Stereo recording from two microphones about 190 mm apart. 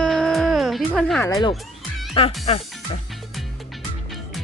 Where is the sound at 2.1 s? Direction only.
30° left (ahead or behind).